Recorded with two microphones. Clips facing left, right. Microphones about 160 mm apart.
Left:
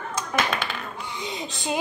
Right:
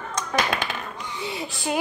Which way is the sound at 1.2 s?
20° left (ahead or behind).